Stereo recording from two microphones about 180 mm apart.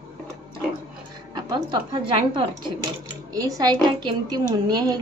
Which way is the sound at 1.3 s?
25° right (ahead or behind).